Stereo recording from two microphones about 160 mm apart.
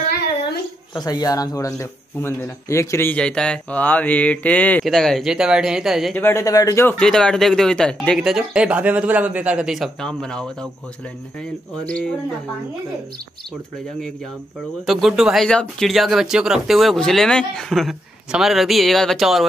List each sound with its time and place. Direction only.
0.9 s speech: 25° left (ahead or behind); by 6.1 s centre (ahead or behind)
6.1 s speech: 15° left (ahead or behind)
7.0 s speech: 5° left (ahead or behind)
11.8 s speech: 5° left (ahead or behind)
14.9 s speech: centre (ahead or behind)